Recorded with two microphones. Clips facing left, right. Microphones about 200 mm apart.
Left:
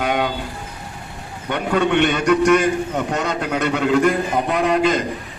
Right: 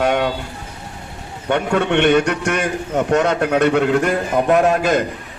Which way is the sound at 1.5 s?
65° right (ahead or behind).